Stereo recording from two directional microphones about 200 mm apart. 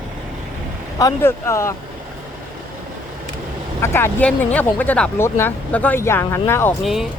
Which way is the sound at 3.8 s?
10° left (ahead or behind).